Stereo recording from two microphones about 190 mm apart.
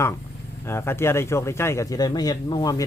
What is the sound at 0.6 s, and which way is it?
Speech, 15° left (ahead or behind).